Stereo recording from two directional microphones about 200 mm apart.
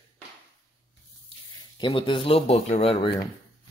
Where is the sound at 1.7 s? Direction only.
25° left (ahead or behind).